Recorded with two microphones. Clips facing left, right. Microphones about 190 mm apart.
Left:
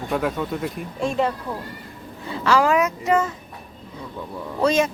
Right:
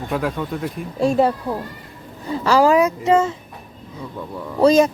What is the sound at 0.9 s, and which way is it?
Speech, 35° right (ahead or behind).